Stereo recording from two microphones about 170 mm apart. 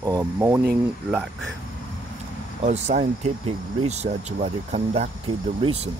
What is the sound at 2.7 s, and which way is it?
Speech, 45° right (ahead or behind).